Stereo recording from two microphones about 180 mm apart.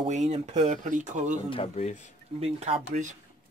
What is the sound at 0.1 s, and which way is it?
Speech, 40° right (ahead or behind).